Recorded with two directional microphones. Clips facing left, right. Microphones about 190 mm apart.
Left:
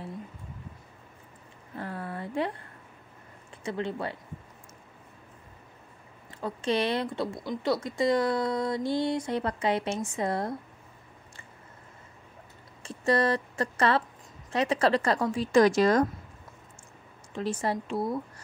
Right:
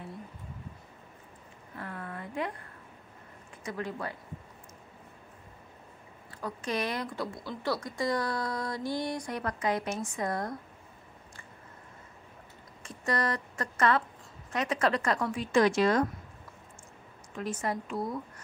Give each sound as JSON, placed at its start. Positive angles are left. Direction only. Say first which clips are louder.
{"t": 1.8, "sound": "a sound", "louder": "left 4 dB", "side_deg": 30}
{"t": 3.6, "sound": "speech", "louder": "left 4 dB", "side_deg": 25}
{"t": 6.4, "sound": "speech", "louder": "left 5 dB", "side_deg": 30}
{"t": 12.8, "sound": "a woman's voice", "louder": "left 6 dB", "side_deg": 30}
{"t": 17.3, "sound": "speech", "louder": "left 4 dB", "side_deg": 30}